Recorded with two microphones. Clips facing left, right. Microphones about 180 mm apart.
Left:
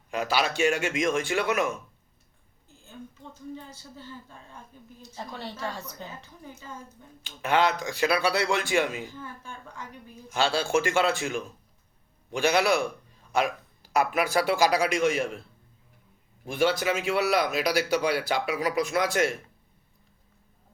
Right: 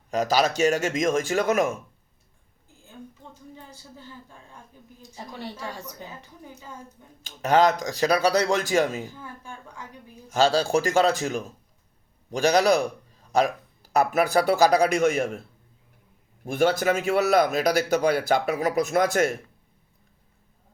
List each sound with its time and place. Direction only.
0.1 s speech: 40° right (ahead or behind)
5.1 s a woman's voice: 15° right (ahead or behind)
7.2 s speech: 40° right (ahead or behind)
10.2 s speech: 40° right (ahead or behind)
16.5 s speech: 45° right (ahead or behind)